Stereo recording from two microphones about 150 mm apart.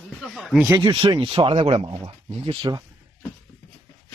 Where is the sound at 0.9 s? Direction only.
30° right (ahead or behind).